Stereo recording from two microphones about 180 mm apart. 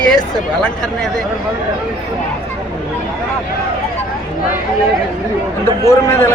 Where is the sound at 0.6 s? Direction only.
5° left (ahead or behind).